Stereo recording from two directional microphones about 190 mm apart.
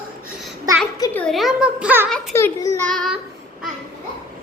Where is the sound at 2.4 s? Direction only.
15° left (ahead or behind).